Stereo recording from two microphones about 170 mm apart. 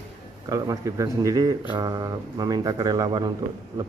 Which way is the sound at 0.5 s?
20° right (ahead or behind).